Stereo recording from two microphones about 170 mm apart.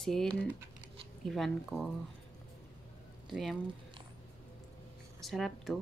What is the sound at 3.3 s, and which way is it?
Speech, centre (ahead or behind).